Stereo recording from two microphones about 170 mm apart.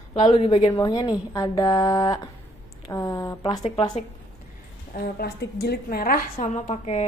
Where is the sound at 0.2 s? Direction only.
40° left (ahead or behind).